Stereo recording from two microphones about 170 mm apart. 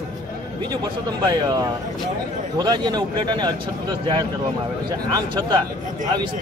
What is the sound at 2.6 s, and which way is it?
Speech, 25° right (ahead or behind).